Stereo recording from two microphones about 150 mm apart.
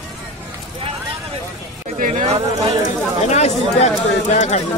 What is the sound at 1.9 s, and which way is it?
Speech, 55° right (ahead or behind).